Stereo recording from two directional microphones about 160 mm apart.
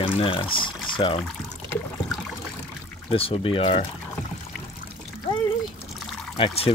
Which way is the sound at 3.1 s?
35° left (ahead or behind).